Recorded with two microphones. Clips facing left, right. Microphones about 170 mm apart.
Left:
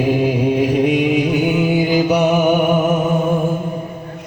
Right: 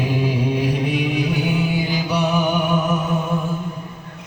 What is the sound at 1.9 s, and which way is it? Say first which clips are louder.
Music: left 7 dB; 50° left (ahead or behind).